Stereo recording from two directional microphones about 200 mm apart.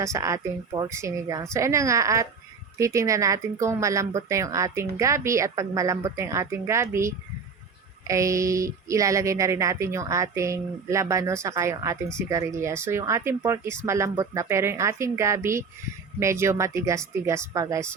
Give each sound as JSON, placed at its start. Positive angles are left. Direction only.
{"t": 0.0, "sound": "speech", "side_deg": -15}